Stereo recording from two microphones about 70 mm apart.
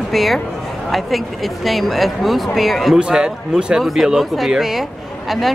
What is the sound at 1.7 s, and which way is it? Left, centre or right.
Speech, centre.